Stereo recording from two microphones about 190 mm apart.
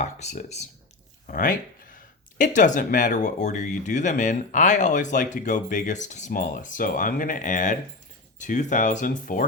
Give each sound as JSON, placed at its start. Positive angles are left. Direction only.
{"t": 0.0, "sound": "speech", "side_deg": 35}
{"t": 1.3, "sound": "speech", "side_deg": 45}